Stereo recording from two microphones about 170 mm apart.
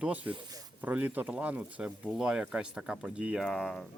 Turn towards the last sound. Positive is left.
turn(degrees=5)  # may be behind; listen again after turning